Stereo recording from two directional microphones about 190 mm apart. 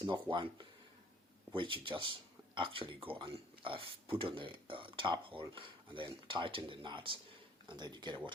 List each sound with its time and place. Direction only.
0.0 s speech: 25° right (ahead or behind)